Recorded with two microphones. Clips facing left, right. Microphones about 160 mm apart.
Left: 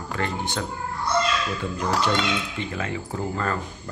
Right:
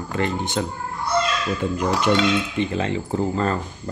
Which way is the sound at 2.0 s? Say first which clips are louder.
Right 5 dB; 20° right (ahead or behind).